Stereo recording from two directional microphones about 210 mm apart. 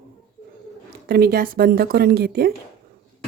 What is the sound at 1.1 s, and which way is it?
A woman's voice, 45° right (ahead or behind).